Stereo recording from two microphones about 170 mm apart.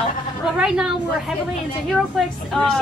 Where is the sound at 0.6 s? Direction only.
5° right (ahead or behind).